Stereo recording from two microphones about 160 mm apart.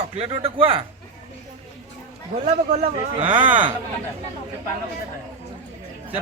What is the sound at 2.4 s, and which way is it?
Speech, 45° right (ahead or behind).